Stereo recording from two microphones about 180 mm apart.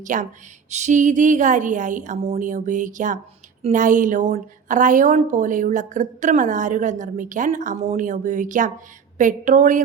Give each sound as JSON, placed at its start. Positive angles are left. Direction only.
{"t": 0.0, "sound": "a woman's voice", "side_deg": -45}